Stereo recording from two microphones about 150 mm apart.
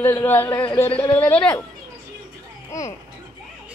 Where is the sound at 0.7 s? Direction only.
15° left (ahead or behind).